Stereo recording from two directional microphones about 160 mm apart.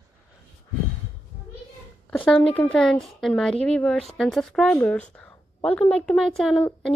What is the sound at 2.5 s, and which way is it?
A woman's voice, 5° left (ahead or behind).